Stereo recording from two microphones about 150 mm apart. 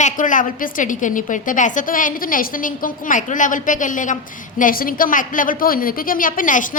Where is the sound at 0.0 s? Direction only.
60° left (ahead or behind).